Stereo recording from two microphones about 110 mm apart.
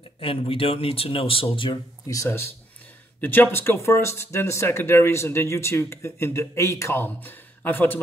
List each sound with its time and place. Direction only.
0.2 s speech: 60° left (ahead or behind)
2.0 s speech: 25° left (ahead or behind)